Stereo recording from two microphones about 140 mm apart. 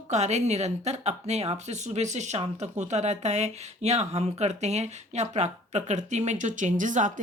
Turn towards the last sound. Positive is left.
turn(degrees=-65)  # may be behind; listen again after turning